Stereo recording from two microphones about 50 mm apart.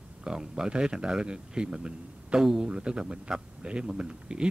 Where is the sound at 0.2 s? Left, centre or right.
Centre.